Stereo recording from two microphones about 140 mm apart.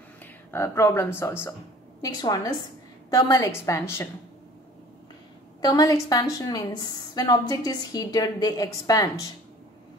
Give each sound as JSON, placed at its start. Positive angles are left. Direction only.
{"t": 0.2, "sound": "speech", "side_deg": 20}
{"t": 2.0, "sound": "a woman's voice", "side_deg": 30}
{"t": 5.6, "sound": "a woman's voice", "side_deg": 30}